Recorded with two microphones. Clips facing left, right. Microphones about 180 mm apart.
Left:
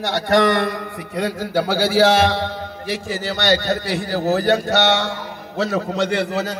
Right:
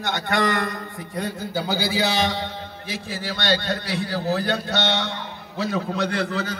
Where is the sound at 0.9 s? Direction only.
80° left.